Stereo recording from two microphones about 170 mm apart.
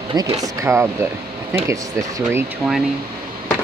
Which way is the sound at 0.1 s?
20° right (ahead or behind).